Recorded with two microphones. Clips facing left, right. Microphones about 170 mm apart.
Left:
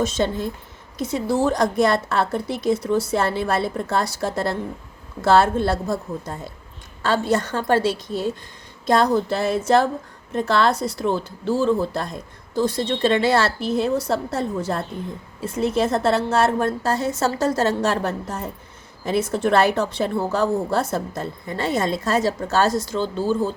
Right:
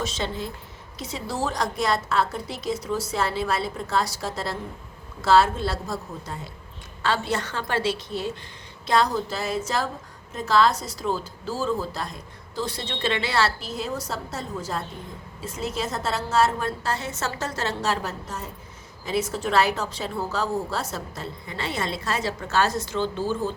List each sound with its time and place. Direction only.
0.0 s a woman's voice: 50° left (ahead or behind)
8.9 s a woman's voice: 55° left (ahead or behind)
12.5 s a woman's voice: 45° left (ahead or behind)